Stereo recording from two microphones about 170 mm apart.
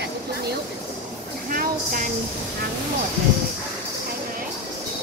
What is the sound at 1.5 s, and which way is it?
Speech, 55° right (ahead or behind).